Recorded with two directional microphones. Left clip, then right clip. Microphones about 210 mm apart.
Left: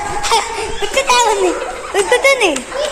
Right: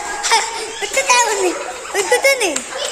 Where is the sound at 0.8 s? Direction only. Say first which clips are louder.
Left 2 dB; 15° left (ahead or behind).